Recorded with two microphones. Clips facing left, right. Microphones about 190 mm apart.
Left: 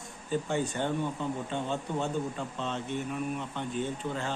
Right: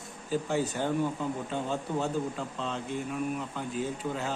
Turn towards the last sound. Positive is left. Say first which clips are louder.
# right 1 dB
turn(degrees=-5)  # may be behind; listen again after turning